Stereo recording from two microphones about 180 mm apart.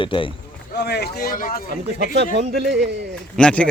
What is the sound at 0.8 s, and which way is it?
Speech, 60° left (ahead or behind).